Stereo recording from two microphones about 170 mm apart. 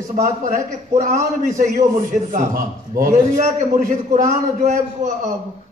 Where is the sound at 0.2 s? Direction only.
45° right (ahead or behind).